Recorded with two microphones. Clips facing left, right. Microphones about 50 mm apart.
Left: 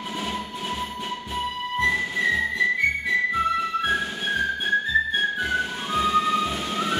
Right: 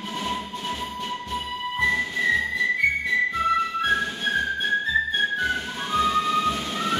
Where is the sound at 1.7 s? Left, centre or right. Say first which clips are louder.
Even; centre.